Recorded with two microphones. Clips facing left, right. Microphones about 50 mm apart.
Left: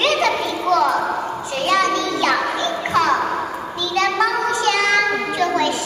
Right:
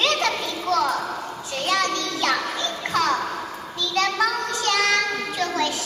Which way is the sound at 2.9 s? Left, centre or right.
Left.